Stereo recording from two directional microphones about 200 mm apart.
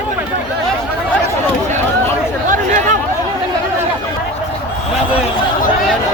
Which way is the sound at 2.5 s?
40° right (ahead or behind).